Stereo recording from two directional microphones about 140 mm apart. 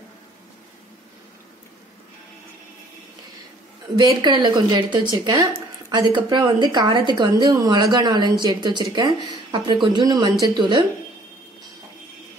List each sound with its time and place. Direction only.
3.8 s speech: 30° right (ahead or behind)